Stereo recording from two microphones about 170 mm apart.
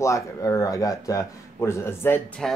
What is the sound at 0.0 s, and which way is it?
Speech, 15° left (ahead or behind).